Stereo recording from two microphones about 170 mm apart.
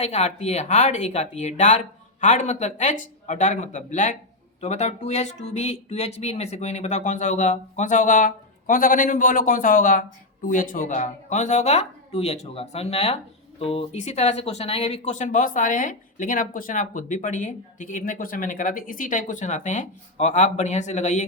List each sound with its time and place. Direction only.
0.0 s speech: 40° left (ahead or behind)